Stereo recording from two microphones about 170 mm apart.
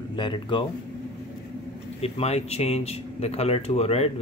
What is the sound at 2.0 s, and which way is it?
Speech, 40° left (ahead or behind).